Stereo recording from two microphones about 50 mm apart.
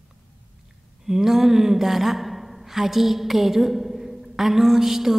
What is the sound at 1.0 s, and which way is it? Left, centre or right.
Speech, centre.